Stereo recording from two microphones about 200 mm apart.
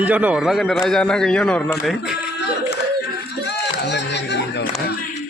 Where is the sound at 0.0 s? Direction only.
10° right (ahead or behind).